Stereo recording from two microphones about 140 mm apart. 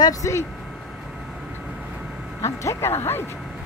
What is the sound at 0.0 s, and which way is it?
Speech, 20° left (ahead or behind).